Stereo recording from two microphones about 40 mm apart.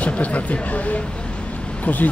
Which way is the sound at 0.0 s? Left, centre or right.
Left.